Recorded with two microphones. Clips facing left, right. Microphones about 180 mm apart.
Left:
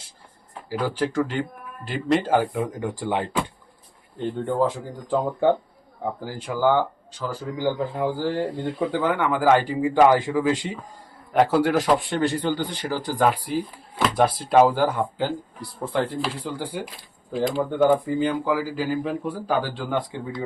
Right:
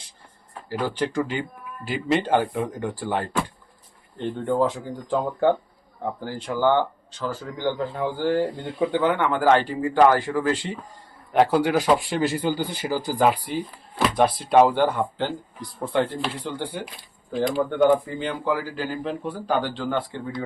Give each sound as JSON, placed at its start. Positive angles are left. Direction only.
{"t": 0.7, "sound": "speech", "side_deg": 5}
{"t": 2.8, "sound": "speech", "side_deg": 20}
{"t": 6.0, "sound": "speech", "side_deg": 10}
{"t": 8.4, "sound": "speech", "side_deg": 0}
{"t": 11.3, "sound": "speech", "side_deg": 0}